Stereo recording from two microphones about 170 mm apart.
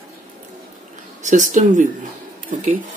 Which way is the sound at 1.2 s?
45° right (ahead or behind).